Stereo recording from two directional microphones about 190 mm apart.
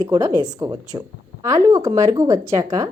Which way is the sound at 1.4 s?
15° right (ahead or behind).